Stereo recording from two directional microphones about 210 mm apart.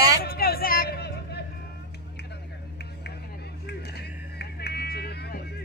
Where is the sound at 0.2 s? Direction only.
45° left (ahead or behind).